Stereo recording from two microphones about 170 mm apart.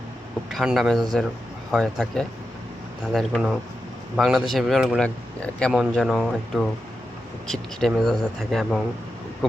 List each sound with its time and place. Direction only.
0.5 s speech: centre (ahead or behind)